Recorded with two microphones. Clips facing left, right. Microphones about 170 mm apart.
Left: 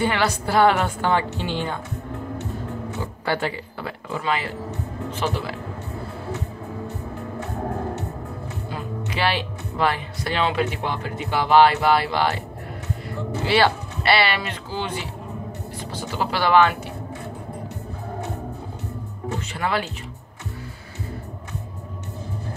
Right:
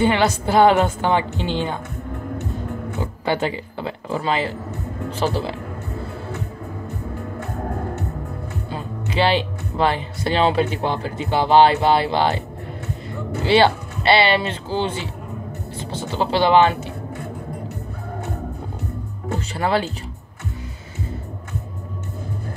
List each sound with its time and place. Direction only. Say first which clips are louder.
0.0 s a woman's voice: right 4 dB; 20° right (ahead or behind)
3.0 s speech: right 3 dB; 20° right (ahead or behind)
8.6 s speech: even; 30° right (ahead or behind)
13.5 s a woman's voice: right 4 dB; 25° right (ahead or behind)
19.5 s speech: right 5 dB; 30° right (ahead or behind)